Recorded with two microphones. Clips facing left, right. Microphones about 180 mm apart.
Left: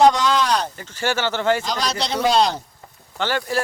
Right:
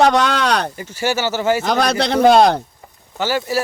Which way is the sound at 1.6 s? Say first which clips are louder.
Right 7 dB; 55° right (ahead or behind).